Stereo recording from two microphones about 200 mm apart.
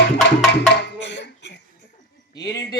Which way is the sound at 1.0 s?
60° left (ahead or behind).